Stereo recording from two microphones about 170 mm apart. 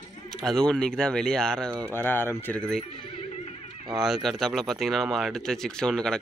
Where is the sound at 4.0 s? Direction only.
Centre (ahead or behind).